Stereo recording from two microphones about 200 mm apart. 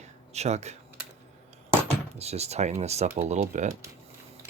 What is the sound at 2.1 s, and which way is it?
Speech, 30° right (ahead or behind).